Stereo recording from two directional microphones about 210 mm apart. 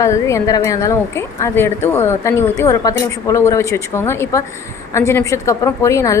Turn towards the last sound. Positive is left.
turn(degrees=15)  # may be behind; listen again after turning